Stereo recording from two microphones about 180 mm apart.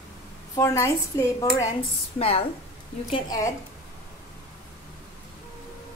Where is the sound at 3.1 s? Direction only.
20° left (ahead or behind).